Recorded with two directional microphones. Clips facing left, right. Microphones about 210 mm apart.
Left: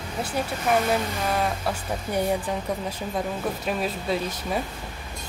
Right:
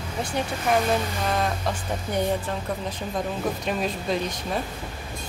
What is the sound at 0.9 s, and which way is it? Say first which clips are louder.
Speech: even; 5° left (ahead or behind).